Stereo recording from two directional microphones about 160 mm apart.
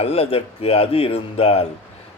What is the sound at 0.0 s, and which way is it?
Speech, 40° left (ahead or behind).